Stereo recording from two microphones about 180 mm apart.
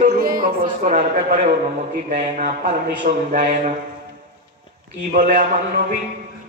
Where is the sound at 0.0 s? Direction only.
50° right (ahead or behind).